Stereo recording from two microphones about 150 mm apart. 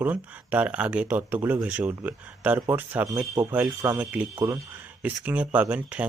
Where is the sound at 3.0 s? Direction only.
20° right (ahead or behind).